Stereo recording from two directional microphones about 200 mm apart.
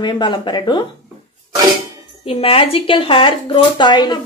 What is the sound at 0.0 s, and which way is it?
Speech, 25° left (ahead or behind).